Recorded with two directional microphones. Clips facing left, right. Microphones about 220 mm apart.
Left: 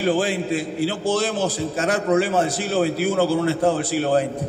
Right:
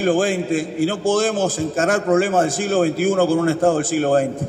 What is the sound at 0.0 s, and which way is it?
A man's voice, 50° right (ahead or behind).